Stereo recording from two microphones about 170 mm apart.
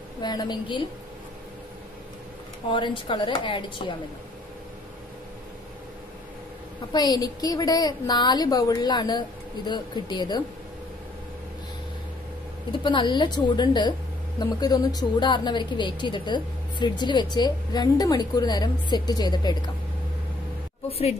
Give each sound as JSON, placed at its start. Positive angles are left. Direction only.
{"t": 0.2, "sound": "a woman's voice", "side_deg": 25}
{"t": 2.7, "sound": "a woman's voice", "side_deg": 30}
{"t": 6.9, "sound": "a woman's voice", "side_deg": 25}
{"t": 12.8, "sound": "a woman's voice", "side_deg": 25}